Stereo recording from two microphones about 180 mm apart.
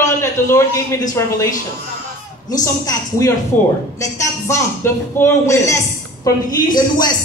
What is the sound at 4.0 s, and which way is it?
A woman's voice, 15° left (ahead or behind).